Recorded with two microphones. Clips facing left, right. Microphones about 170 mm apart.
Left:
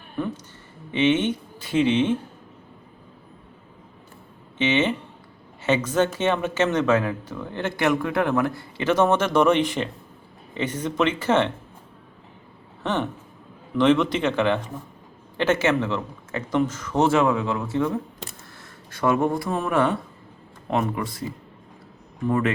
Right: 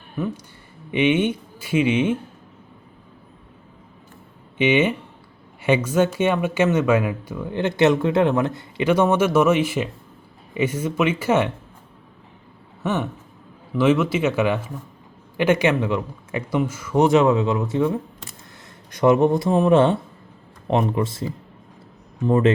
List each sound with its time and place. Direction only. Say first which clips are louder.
0.9 s speech: right 2 dB; 10° right (ahead or behind)
4.5 s speech: right 3 dB; 10° right (ahead or behind)
12.8 s speech: right 1 dB; 10° right (ahead or behind); by 21.2 s 25° right (ahead or behind)
22.3 s speech: right 5 dB; 25° right (ahead or behind)